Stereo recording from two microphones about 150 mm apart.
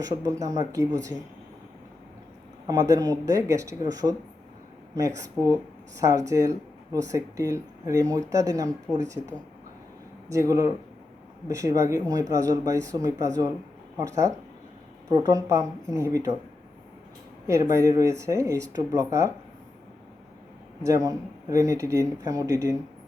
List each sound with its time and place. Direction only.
0.3 s speech: 25° right (ahead or behind)
2.6 s speech: 25° right (ahead or behind)
10.2 s speech: 20° right (ahead or behind)
17.4 s speech: 20° right (ahead or behind)
20.8 s speech: 20° right (ahead or behind)